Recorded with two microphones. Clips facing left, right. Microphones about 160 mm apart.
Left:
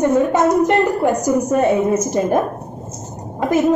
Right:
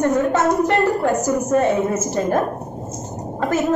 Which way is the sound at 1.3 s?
15° left (ahead or behind).